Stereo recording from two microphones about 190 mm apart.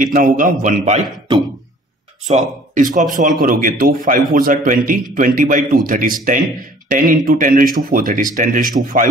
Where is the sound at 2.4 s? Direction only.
40° right (ahead or behind).